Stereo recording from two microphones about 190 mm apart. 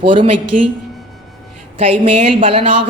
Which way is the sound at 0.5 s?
45° right (ahead or behind).